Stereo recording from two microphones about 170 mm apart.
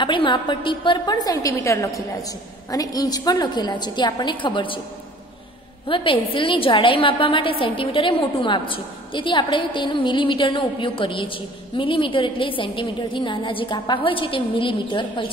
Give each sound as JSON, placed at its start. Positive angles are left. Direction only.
{"t": 0.0, "sound": "a woman's voice", "side_deg": 30}
{"t": 5.9, "sound": "a woman's voice", "side_deg": 30}